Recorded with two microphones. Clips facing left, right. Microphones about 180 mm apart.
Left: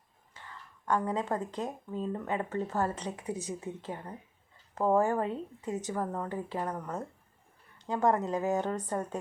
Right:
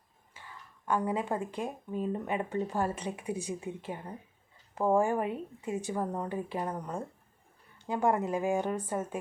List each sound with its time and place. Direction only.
0.9 s speech: 10° right (ahead or behind)